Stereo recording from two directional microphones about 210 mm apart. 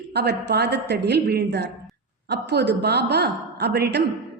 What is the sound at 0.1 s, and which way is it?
A woman's voice, 50° right (ahead or behind).